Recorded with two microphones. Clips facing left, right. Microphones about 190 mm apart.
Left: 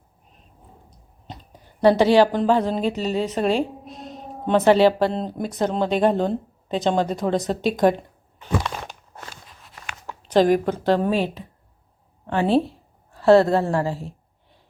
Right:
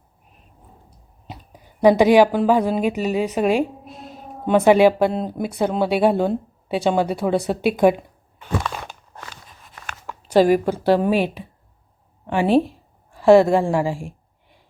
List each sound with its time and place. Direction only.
0.9 s speech: 10° right (ahead or behind)
10.2 s a woman's voice: 10° right (ahead or behind)